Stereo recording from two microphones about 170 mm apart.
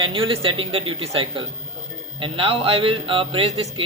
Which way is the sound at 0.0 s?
30° right (ahead or behind).